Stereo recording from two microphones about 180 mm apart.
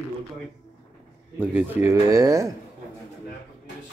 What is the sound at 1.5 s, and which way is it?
Speech, 10° right (ahead or behind).